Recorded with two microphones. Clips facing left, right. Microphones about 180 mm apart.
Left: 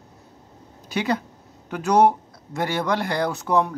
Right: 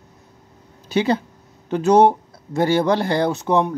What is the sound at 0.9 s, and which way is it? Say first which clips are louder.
Speech: right 5 dB; 30° right (ahead or behind).